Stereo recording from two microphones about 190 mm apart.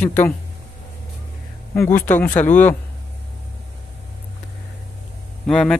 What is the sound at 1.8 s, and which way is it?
Speech, 10° left (ahead or behind).